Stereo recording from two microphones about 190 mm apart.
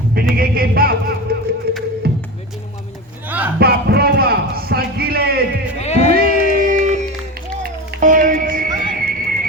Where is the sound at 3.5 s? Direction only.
55° right (ahead or behind).